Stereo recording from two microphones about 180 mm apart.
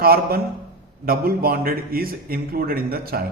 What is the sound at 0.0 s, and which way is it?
A man's voice, 55° right (ahead or behind).